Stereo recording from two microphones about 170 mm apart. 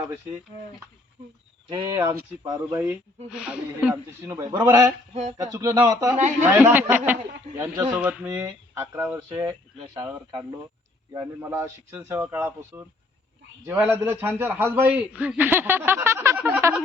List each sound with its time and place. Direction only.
1.7 s a man's voice: 25° right (ahead or behind)
3.2 s a man's voice: 5° right (ahead or behind)
5.1 s speech: 45° right (ahead or behind)
5.5 s a man's voice: 20° right (ahead or behind)
7.9 s a man's voice: 5° right (ahead or behind)
8.3 s a man's voice: 20° right (ahead or behind)
11.1 s a man's voice: 15° right (ahead or behind)